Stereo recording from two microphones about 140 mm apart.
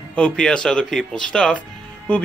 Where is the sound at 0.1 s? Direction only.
5° left (ahead or behind).